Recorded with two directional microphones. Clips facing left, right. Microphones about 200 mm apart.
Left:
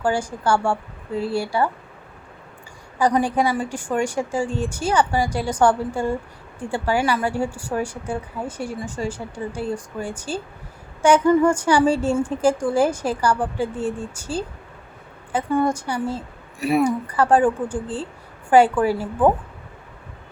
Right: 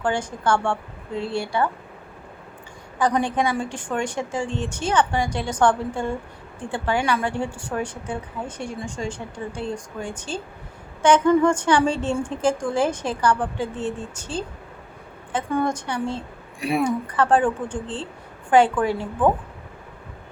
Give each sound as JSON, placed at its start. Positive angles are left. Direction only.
{"t": 0.0, "sound": "speech", "side_deg": 10}
{"t": 3.0, "sound": "speech", "side_deg": 10}